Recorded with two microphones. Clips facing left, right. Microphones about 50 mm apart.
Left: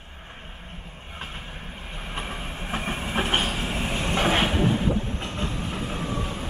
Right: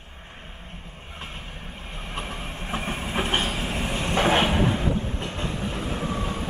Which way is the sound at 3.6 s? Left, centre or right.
Centre.